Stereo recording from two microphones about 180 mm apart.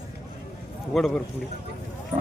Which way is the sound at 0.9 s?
Centre (ahead or behind).